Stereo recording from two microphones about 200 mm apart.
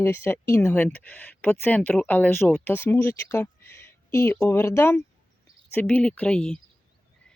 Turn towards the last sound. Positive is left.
turn(degrees=5)  # may be behind; listen again after turning